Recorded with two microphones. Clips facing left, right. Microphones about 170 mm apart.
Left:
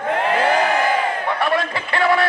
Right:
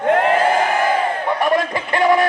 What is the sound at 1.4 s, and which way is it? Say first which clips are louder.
Speech: right 4 dB; 15° right (ahead or behind).